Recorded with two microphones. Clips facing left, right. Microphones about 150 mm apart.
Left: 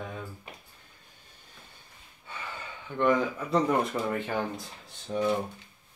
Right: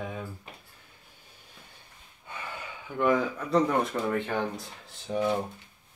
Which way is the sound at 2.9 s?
5° right (ahead or behind).